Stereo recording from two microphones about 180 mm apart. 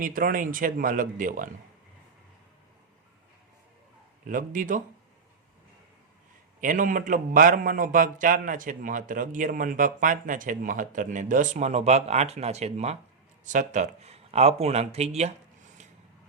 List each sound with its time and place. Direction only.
0.0 s a man's voice: 50° right (ahead or behind)
4.3 s a man's voice: 50° right (ahead or behind)
6.6 s a man's voice: 45° right (ahead or behind)